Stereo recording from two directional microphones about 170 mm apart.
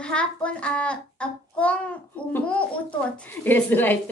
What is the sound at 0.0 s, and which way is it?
A child's voice, 5° left (ahead or behind).